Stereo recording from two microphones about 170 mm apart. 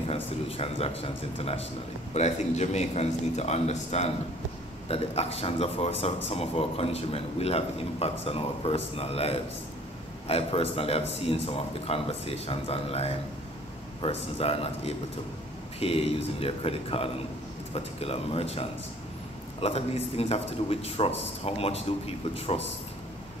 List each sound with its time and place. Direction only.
0.1 s speech: 35° left (ahead or behind)